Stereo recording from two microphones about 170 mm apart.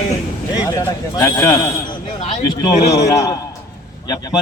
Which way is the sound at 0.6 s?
20° left (ahead or behind).